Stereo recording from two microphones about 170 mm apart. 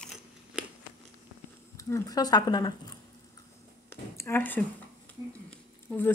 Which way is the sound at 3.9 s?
15° left (ahead or behind).